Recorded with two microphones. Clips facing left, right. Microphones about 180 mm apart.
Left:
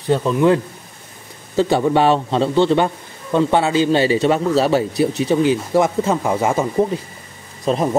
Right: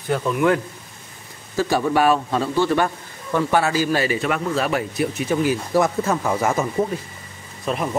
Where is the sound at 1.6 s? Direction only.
25° left (ahead or behind).